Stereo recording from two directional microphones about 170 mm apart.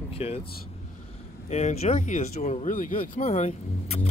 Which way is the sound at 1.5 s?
40° left (ahead or behind).